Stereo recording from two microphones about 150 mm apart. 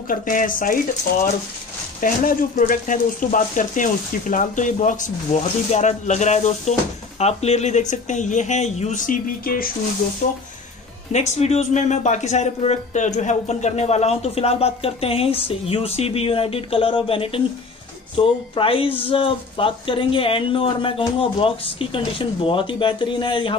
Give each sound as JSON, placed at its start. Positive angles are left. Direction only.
{"t": 0.1, "sound": "speech", "side_deg": 65}
{"t": 2.0, "sound": "speech", "side_deg": 60}
{"t": 11.1, "sound": "speech", "side_deg": 50}